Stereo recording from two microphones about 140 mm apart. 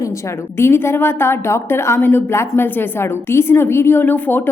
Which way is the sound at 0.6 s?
20° left (ahead or behind).